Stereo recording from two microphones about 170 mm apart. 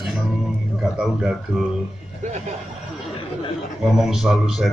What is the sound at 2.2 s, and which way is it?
Speech, 45° right (ahead or behind).